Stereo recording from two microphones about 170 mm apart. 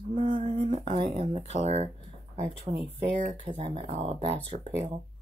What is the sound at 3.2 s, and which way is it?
Speech, 40° right (ahead or behind).